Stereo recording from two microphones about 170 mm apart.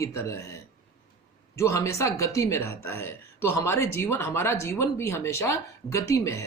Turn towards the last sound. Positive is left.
turn(degrees=15)  # may be behind; listen again after turning